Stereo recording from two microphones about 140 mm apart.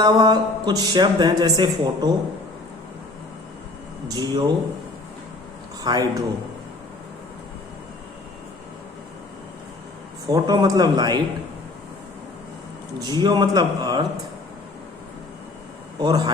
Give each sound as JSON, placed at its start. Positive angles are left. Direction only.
{"t": 0.0, "sound": "a woman's voice", "side_deg": -30}
{"t": 4.1, "sound": "a man's voice", "side_deg": -30}
{"t": 5.8, "sound": "a man's voice", "side_deg": -30}
{"t": 10.2, "sound": "a man's voice", "side_deg": -30}
{"t": 13.0, "sound": "a man's voice", "side_deg": -30}
{"t": 16.0, "sound": "a man's voice", "side_deg": -30}